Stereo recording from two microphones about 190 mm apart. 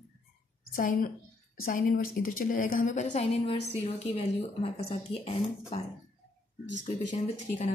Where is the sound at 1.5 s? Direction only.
50° left (ahead or behind); by 5.3 s 30° left (ahead or behind).